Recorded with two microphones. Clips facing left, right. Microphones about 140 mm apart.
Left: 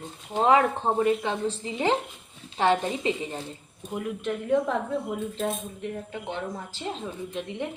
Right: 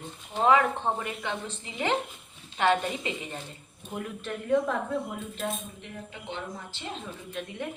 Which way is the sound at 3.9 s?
15° left (ahead or behind).